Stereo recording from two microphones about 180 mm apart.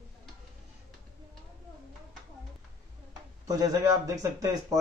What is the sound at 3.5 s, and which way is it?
A man's voice, 20° right (ahead or behind).